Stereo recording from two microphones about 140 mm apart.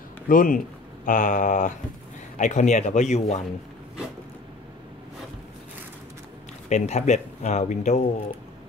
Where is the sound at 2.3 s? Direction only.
60° left (ahead or behind).